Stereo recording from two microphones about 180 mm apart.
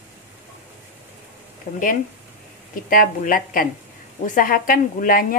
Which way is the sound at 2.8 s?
50° left (ahead or behind).